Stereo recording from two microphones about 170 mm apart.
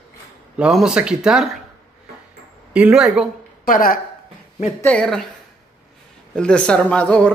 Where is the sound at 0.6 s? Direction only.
5° right (ahead or behind).